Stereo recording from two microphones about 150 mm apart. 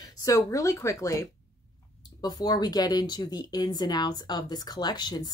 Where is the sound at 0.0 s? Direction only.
25° left (ahead or behind).